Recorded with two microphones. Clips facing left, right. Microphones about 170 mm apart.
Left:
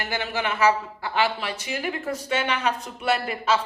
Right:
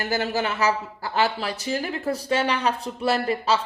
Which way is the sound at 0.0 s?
40° right (ahead or behind).